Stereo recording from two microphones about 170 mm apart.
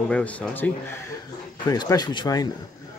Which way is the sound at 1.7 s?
20° left (ahead or behind).